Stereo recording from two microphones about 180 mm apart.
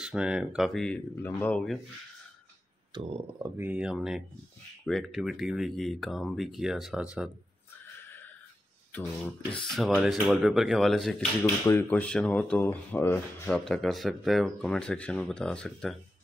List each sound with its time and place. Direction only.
0.0 s speech: 5° right (ahead or behind)
2.9 s speech: 25° right (ahead or behind)
3.3 s speech: 10° right (ahead or behind)
9.6 s speech: 5° left (ahead or behind)